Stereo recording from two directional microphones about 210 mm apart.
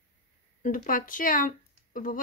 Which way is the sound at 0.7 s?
40° left (ahead or behind).